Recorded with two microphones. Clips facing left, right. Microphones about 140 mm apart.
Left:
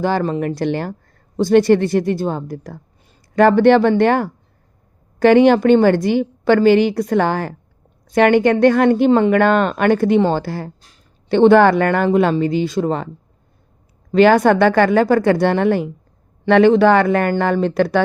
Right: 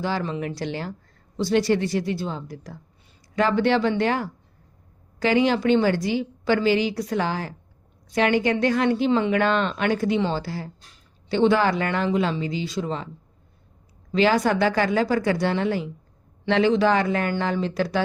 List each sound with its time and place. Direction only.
0.0 s speech: 50° left (ahead or behind)
14.1 s speech: 55° left (ahead or behind)